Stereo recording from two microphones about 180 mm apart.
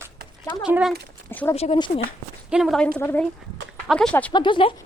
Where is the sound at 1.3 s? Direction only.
10° left (ahead or behind).